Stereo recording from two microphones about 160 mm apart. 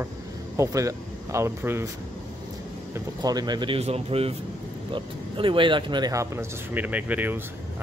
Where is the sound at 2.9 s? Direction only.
25° right (ahead or behind).